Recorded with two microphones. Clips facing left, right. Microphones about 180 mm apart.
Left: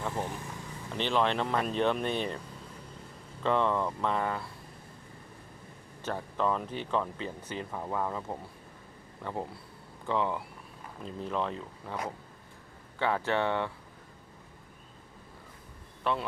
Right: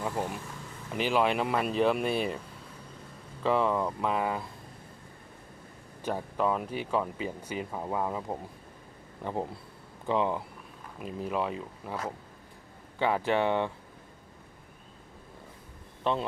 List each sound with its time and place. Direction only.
0.0 s vehicle: 15° right (ahead or behind)
0.9 s speech: 10° right (ahead or behind)
3.4 s speech: 5° right (ahead or behind)
6.0 s speech: 10° right (ahead or behind)
13.0 s speech: 15° right (ahead or behind)
16.1 s speech: 20° right (ahead or behind)